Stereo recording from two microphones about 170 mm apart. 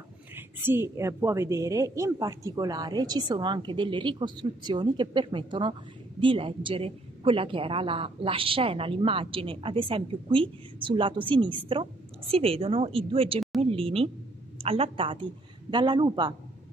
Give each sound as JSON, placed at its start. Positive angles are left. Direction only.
{"t": 0.4, "sound": "speech", "side_deg": -15}
{"t": 13.6, "sound": "a sound", "side_deg": -35}
{"t": 14.6, "sound": "a woman's voice", "side_deg": -35}